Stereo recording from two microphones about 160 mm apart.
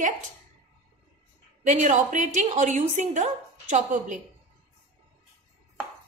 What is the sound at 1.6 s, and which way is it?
A woman's voice, 50° right (ahead or behind).